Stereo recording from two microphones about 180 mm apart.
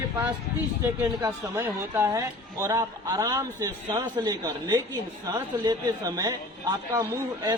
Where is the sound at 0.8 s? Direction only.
15° right (ahead or behind).